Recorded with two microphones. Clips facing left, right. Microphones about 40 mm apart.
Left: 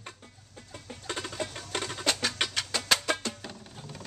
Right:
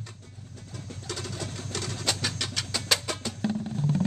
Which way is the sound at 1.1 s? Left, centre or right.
Left.